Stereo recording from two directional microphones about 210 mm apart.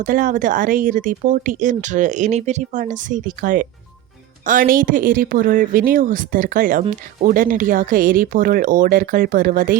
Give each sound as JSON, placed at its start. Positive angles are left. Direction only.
{"t": 0.0, "sound": "speech", "side_deg": -40}